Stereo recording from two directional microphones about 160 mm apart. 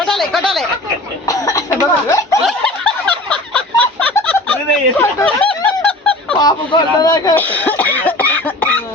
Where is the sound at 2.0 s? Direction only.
20° left (ahead or behind).